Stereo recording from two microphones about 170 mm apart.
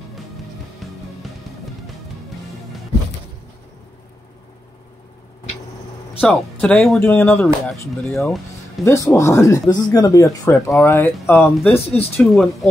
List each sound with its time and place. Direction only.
1.2 s music: centre (ahead or behind)
6.2 s speech: 5° left (ahead or behind)
8.8 s speech: 15° left (ahead or behind)